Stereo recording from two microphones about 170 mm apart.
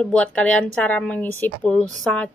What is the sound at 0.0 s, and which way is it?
A woman's voice, 5° left (ahead or behind).